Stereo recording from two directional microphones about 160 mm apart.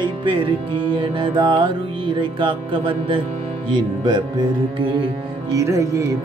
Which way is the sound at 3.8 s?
25° right (ahead or behind).